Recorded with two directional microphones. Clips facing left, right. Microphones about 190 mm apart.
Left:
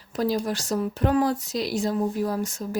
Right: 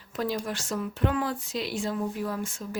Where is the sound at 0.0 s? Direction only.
35° left (ahead or behind).